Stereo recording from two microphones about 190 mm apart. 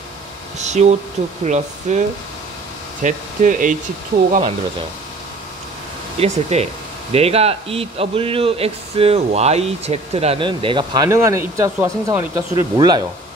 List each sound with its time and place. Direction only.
0.6 s speech: 35° right (ahead or behind)
6.1 s speech: 35° right (ahead or behind)